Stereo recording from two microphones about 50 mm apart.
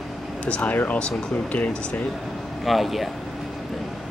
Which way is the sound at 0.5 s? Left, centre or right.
Left.